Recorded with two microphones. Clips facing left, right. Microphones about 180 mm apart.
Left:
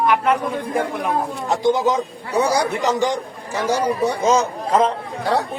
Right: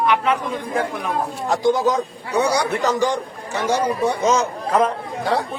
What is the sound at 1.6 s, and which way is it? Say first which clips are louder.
Speech: even; 20° left (ahead or behind).